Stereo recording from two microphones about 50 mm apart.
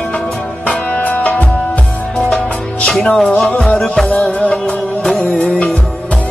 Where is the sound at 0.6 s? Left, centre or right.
Left.